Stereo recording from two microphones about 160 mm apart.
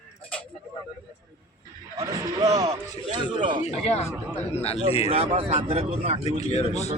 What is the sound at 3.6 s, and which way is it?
Speech, 45° left (ahead or behind).